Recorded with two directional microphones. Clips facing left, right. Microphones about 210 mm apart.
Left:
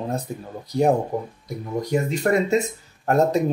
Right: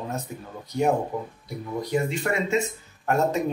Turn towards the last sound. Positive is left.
turn(degrees=35)  # may be behind; listen again after turning